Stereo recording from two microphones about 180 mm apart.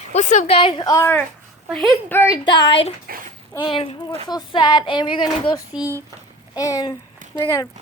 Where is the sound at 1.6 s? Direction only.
Centre (ahead or behind).